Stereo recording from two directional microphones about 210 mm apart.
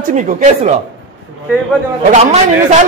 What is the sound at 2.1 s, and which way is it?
Speech, 35° right (ahead or behind).